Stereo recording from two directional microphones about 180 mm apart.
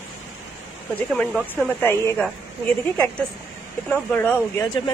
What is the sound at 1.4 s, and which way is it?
Speech, 10° left (ahead or behind).